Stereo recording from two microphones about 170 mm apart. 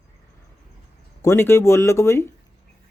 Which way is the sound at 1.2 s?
15° left (ahead or behind).